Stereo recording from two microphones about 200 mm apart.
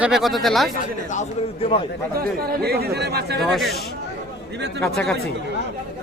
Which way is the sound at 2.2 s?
50° right (ahead or behind).